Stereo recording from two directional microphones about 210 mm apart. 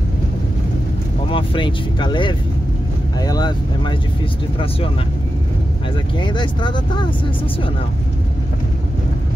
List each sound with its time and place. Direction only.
1.3 s speech: 25° left (ahead or behind)
6.1 s speech: 20° left (ahead or behind)